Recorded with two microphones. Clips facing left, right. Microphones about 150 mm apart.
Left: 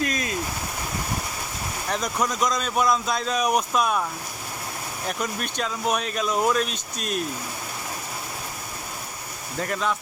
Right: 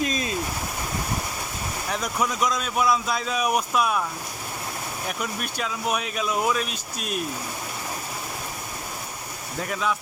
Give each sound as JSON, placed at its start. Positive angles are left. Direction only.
{"t": 0.0, "sound": "stream", "side_deg": -25}
{"t": 1.9, "sound": "speech", "side_deg": -5}
{"t": 5.0, "sound": "speech", "side_deg": -5}
{"t": 9.6, "sound": "speech", "side_deg": -5}